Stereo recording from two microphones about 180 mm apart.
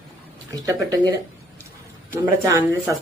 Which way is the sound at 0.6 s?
20° right (ahead or behind).